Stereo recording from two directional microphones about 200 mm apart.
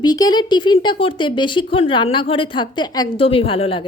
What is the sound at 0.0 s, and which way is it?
Speech, 20° left (ahead or behind).